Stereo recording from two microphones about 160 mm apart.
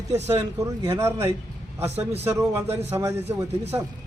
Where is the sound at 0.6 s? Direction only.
20° right (ahead or behind).